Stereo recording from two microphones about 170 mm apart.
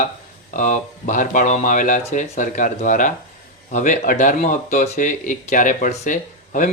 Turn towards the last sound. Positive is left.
turn(degrees=50)  # may be behind; listen again after turning